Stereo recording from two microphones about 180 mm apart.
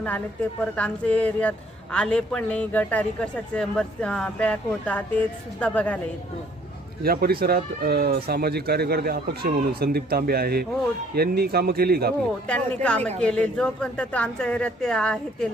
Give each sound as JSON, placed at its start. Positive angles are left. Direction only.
{"t": 0.6, "sound": "a woman's voice", "side_deg": 5}
{"t": 7.0, "sound": "speech", "side_deg": -55}
{"t": 12.5, "sound": "a woman's voice", "side_deg": 5}